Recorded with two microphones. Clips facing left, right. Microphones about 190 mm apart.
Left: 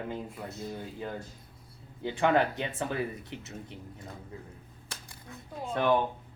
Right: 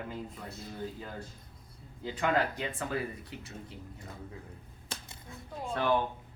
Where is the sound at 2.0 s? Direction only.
25° left (ahead or behind).